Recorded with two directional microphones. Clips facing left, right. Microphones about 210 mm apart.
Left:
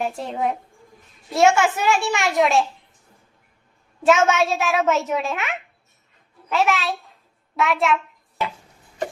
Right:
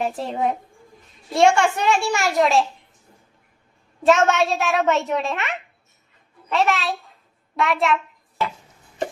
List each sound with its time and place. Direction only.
0.0 s a child's voice: centre (ahead or behind)
4.0 s a child's voice: centre (ahead or behind)